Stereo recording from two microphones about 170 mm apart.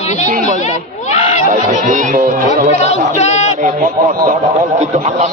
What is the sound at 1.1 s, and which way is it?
Speech, 45° left (ahead or behind).